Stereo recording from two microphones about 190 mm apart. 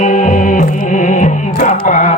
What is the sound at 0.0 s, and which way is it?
Music, 40° left (ahead or behind).